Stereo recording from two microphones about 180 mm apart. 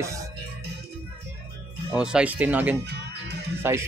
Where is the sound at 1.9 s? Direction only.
5° right (ahead or behind).